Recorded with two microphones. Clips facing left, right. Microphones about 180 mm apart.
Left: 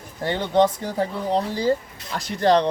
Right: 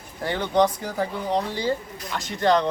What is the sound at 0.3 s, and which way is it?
Speech, 25° left (ahead or behind).